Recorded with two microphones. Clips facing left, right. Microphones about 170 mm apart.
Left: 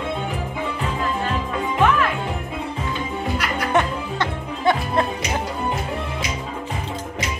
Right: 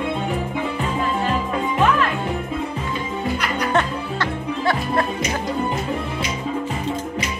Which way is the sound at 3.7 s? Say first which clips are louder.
Left 3 dB; 20° left (ahead or behind).